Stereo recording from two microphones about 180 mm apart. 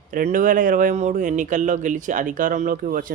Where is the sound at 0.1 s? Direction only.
50° right (ahead or behind).